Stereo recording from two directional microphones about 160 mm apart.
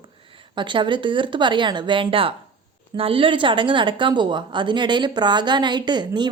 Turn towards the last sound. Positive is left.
turn(degrees=-30)  # may be behind; listen again after turning